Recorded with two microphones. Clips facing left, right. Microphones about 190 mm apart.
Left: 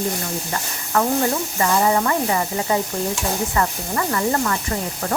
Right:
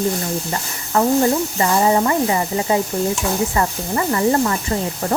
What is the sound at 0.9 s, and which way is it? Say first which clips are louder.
A woman's voice: right 4 dB; 25° right (ahead or behind).